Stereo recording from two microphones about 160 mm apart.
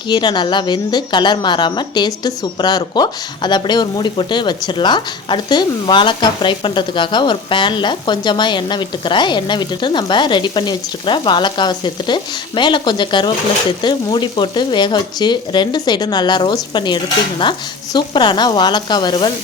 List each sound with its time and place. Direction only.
0.1 s a woman's voice: 30° left (ahead or behind)